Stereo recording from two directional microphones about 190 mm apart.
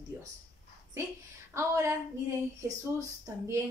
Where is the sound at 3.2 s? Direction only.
15° right (ahead or behind).